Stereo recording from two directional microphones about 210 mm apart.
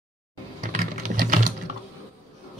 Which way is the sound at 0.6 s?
40° right (ahead or behind).